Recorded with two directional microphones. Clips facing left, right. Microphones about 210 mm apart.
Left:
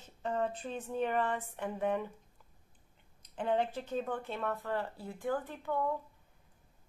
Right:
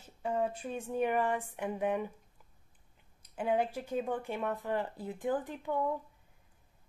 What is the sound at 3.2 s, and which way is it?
A woman's voice, 10° right (ahead or behind).